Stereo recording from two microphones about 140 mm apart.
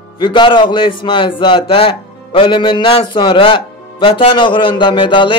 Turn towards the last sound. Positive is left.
turn(degrees=35)  # may be behind; listen again after turning